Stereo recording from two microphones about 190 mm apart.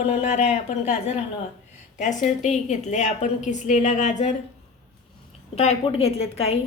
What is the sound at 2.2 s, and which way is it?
A woman's voice, 40° left (ahead or behind).